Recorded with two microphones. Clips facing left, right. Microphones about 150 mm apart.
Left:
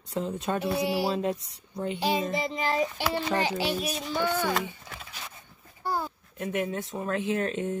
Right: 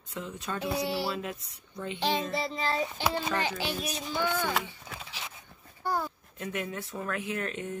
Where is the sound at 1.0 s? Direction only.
30° left (ahead or behind).